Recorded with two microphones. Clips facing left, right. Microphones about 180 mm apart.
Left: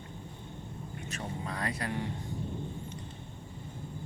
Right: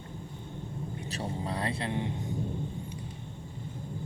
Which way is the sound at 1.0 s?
35° right (ahead or behind).